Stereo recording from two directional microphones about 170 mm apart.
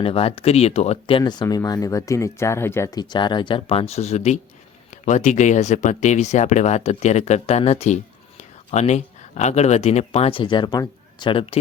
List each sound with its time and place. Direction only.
0.0 s speech: 35° left (ahead or behind)
1.2 s speech: 25° left (ahead or behind)